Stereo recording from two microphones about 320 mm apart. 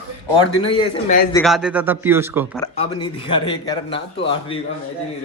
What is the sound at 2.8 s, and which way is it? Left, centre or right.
A man's voice, centre.